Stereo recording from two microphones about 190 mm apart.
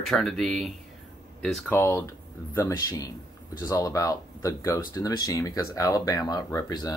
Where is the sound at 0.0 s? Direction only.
Centre (ahead or behind).